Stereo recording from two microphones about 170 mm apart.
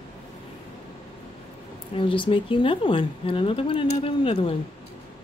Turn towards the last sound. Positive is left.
turn(degrees=30)  # may be behind; listen again after turning